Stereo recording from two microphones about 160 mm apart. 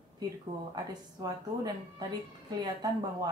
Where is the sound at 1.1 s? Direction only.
25° right (ahead or behind).